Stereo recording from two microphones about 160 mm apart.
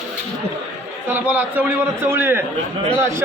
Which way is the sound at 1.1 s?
10° right (ahead or behind).